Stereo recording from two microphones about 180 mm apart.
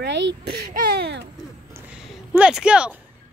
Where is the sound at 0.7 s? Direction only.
65° right (ahead or behind).